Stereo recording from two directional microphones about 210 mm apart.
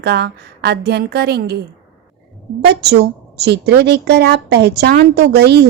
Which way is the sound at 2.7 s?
50° right (ahead or behind).